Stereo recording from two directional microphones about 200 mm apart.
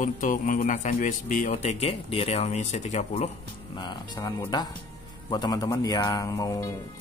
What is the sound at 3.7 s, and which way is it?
Speech, 20° left (ahead or behind).